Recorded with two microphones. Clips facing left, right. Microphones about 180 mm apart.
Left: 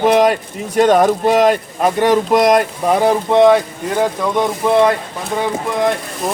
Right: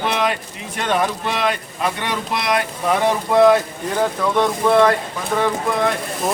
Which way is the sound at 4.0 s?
15° left (ahead or behind).